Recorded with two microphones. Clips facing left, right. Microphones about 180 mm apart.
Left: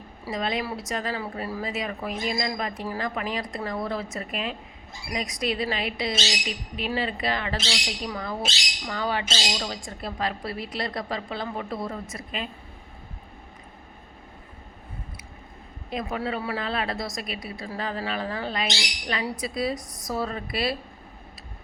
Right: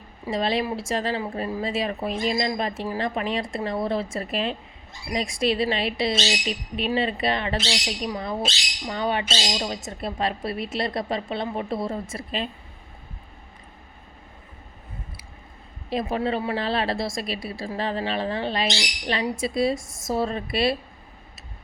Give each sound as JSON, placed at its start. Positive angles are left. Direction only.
{"t": 0.3, "sound": "a woman's voice", "side_deg": -30}
{"t": 15.9, "sound": "a woman's voice", "side_deg": -30}